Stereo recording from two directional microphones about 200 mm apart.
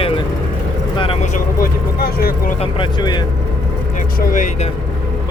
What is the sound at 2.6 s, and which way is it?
Speech, 25° left (ahead or behind).